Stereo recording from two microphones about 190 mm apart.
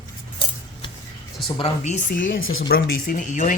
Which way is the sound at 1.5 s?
30° left (ahead or behind).